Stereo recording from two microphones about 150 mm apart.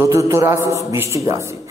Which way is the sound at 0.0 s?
20° right (ahead or behind).